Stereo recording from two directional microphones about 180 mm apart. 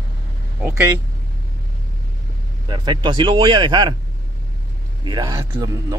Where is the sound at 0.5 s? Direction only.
15° right (ahead or behind).